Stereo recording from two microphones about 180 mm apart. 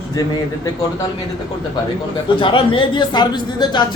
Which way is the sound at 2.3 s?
30° left (ahead or behind).